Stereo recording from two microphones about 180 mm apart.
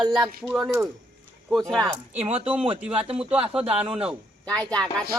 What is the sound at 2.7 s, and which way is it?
Speech, 5° right (ahead or behind).